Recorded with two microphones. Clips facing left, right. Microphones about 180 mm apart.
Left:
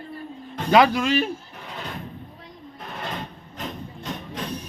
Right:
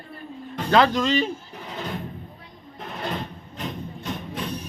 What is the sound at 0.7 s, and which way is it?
Speech, 10° left (ahead or behind).